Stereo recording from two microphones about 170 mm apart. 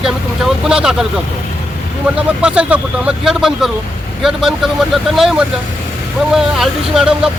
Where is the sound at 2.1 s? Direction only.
5° right (ahead or behind).